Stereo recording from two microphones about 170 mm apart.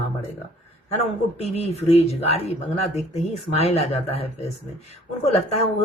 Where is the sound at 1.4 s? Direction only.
40° left (ahead or behind).